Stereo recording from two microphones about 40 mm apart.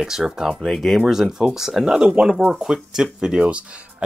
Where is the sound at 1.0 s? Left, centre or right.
Centre.